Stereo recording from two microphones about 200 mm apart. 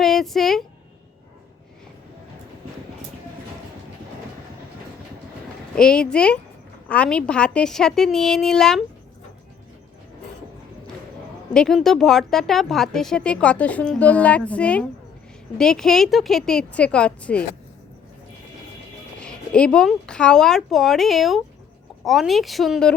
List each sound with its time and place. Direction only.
0.0 s speech: centre (ahead or behind)
5.7 s speech: 5° left (ahead or behind)
11.5 s speech: centre (ahead or behind)
19.2 s speech: 5° left (ahead or behind)